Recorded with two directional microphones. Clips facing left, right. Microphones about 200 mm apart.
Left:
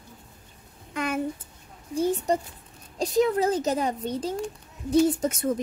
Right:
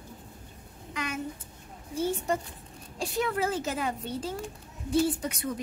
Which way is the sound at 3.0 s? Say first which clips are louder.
Left 7 dB; 40° left (ahead or behind).